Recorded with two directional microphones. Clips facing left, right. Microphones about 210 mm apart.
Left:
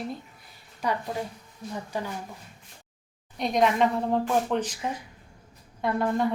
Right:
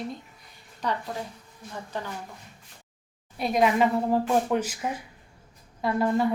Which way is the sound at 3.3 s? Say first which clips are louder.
Right 1 dB; 5° right (ahead or behind).